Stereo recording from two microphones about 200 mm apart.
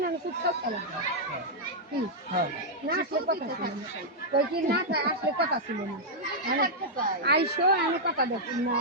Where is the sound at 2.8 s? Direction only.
50° right (ahead or behind).